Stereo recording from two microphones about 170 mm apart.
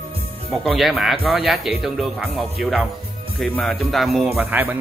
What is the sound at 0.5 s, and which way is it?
Speech, centre (ahead or behind).